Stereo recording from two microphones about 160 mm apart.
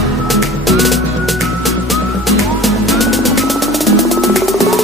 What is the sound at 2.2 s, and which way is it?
Music, centre (ahead or behind).